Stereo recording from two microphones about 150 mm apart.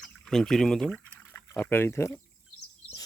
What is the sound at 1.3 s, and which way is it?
Speech, 15° left (ahead or behind).